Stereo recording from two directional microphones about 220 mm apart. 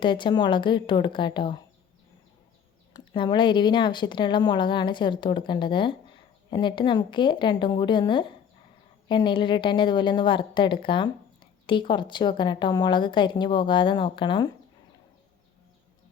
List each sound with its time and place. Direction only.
0.0 s speech: 20° left (ahead or behind)
2.9 s speech: 20° left (ahead or behind)